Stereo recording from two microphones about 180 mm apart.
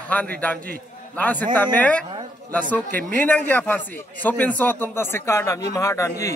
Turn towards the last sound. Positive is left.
turn(degrees=15)  # may be behind; listen again after turning